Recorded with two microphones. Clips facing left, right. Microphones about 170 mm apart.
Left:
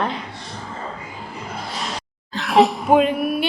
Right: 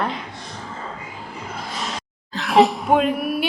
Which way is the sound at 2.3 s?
Centre (ahead or behind).